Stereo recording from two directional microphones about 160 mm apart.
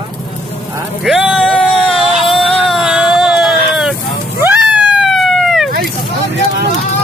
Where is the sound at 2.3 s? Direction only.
Centre (ahead or behind).